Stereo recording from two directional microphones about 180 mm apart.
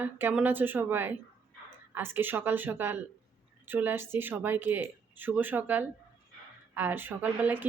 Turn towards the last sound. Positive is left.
turn(degrees=-10)  # may be behind; listen again after turning